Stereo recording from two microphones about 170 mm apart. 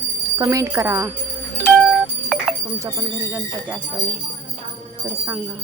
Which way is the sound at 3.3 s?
5° right (ahead or behind).